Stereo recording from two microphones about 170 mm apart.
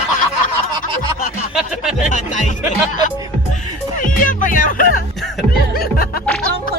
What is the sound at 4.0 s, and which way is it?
Speech, 50° left (ahead or behind).